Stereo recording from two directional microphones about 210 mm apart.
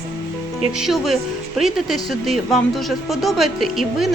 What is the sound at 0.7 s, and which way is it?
Speech, centre (ahead or behind).